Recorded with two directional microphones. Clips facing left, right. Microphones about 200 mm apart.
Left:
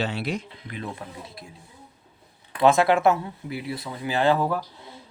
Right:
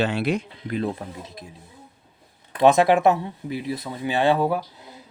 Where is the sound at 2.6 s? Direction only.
20° right (ahead or behind).